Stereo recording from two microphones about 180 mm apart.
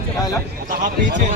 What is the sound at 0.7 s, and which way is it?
Speech, 45° right (ahead or behind).